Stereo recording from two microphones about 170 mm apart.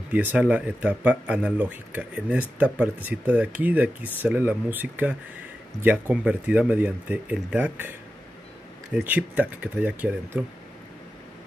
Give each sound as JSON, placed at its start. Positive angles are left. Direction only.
{"t": 0.1, "sound": "speech", "side_deg": -10}
{"t": 8.9, "sound": "speech", "side_deg": -10}